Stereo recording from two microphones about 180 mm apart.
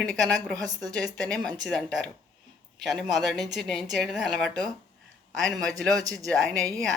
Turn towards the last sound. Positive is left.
turn(degrees=-20)  # may be behind; listen again after turning